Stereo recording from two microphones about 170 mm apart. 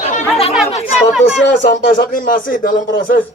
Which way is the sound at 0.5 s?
Centre (ahead or behind).